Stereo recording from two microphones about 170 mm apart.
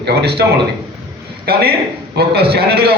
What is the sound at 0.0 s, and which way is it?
A man's voice, 70° right (ahead or behind).